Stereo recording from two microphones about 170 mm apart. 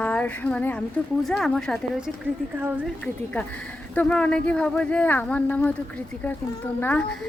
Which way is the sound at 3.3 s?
10° left (ahead or behind).